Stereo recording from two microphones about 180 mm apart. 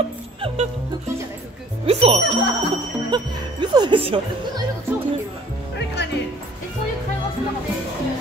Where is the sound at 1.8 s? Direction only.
35° right (ahead or behind).